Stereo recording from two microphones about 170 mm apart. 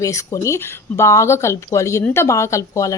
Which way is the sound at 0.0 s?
20° left (ahead or behind).